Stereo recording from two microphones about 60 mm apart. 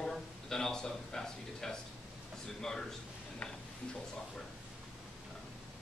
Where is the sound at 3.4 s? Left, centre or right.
Centre.